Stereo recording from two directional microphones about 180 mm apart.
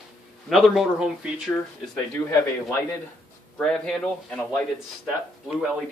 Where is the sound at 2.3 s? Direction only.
15° left (ahead or behind).